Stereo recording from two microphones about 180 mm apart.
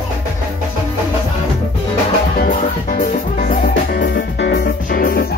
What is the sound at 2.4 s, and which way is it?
Music, 50° left (ahead or behind).